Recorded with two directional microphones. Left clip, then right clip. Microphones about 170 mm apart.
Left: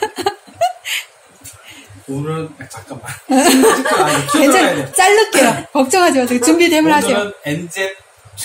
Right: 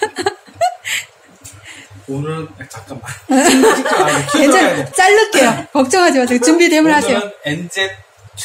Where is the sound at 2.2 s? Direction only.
15° right (ahead or behind).